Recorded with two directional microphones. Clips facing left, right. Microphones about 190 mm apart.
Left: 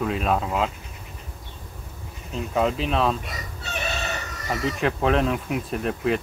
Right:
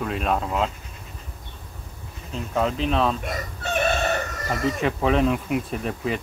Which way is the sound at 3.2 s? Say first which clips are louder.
Right 6 dB; 50° right (ahead or behind).